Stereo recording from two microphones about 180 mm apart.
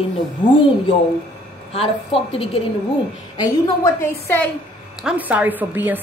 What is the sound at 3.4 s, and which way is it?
A woman's voice, 15° left (ahead or behind).